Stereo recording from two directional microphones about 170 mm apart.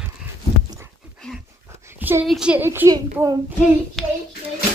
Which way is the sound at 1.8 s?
15° right (ahead or behind).